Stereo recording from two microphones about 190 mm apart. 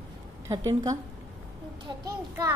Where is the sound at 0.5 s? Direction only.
15° right (ahead or behind).